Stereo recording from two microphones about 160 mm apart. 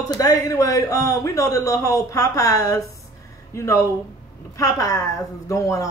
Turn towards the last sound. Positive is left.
turn(degrees=20)  # may be behind; listen again after turning